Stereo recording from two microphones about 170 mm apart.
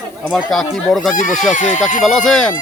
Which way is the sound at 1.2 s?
50° left (ahead or behind).